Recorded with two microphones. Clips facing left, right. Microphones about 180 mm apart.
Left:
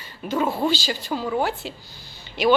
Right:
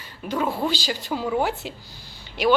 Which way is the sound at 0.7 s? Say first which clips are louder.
Even; 15° right (ahead or behind).